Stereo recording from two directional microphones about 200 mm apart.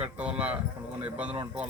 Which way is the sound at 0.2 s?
5° right (ahead or behind).